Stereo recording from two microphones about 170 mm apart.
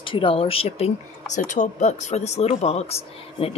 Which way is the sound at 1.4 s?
45° left (ahead or behind).